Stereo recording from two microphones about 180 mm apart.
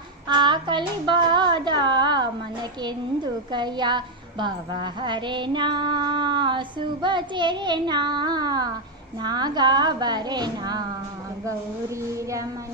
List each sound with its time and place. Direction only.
0.3 s a sound: 25° right (ahead or behind)
3.5 s female singing: 25° right (ahead or behind)
12.1 s speech: 15° right (ahead or behind)